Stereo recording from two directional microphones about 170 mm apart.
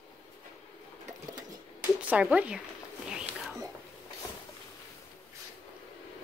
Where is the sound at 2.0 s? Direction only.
10° right (ahead or behind).